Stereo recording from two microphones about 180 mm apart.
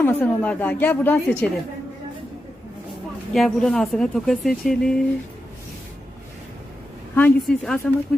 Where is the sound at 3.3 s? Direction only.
Centre (ahead or behind).